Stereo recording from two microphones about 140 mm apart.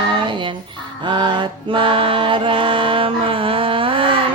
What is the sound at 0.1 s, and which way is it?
Music, 35° right (ahead or behind).